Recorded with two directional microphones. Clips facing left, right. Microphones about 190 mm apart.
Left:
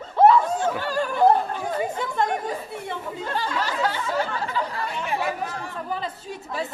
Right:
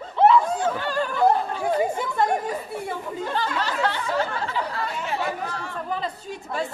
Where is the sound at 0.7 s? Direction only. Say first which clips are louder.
Even; 10° left (ahead or behind).